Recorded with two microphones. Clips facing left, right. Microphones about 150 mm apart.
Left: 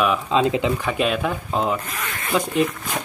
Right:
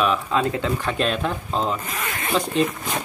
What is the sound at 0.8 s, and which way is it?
Speech, 5° left (ahead or behind).